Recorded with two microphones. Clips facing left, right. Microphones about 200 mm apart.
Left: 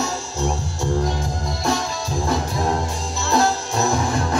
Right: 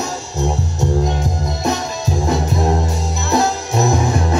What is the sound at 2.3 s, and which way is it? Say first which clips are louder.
Music: right 4 dB; 20° right (ahead or behind).